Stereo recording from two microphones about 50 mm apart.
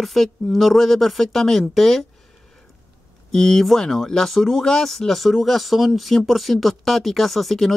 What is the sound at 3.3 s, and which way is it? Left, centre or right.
Speech, centre.